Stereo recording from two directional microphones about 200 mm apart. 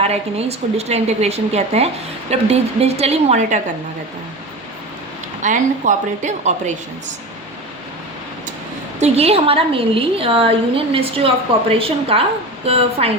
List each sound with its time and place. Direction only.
0.0 s a woman's voice: 30° right (ahead or behind)
5.4 s a woman's voice: 40° right (ahead or behind)
9.0 s a woman's voice: 30° right (ahead or behind)